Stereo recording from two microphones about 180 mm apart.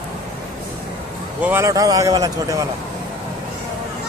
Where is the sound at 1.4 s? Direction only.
15° right (ahead or behind).